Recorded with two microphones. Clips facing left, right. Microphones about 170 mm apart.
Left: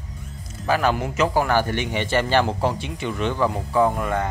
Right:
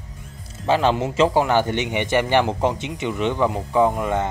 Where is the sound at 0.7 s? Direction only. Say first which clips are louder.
Right 2 dB; 25° right (ahead or behind).